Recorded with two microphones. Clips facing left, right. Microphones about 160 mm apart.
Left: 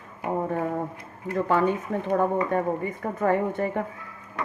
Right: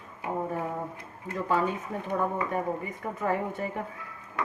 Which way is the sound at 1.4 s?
65° left (ahead or behind).